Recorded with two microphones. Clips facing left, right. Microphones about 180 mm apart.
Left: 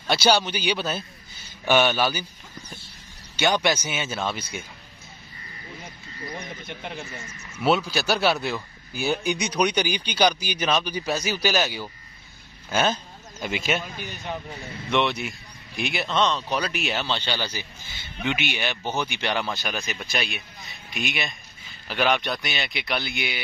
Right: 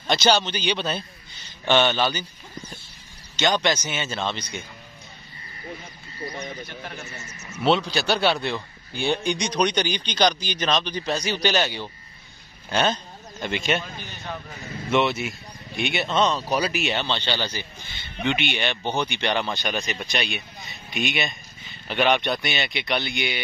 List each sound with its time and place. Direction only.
0.0 s speech: 10° left (ahead or behind)
3.3 s speech: 10° left (ahead or behind)
7.6 s speech: 5° left (ahead or behind)
14.9 s speech: centre (ahead or behind)